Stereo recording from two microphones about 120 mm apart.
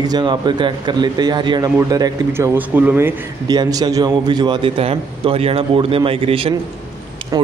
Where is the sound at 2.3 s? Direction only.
20° right (ahead or behind).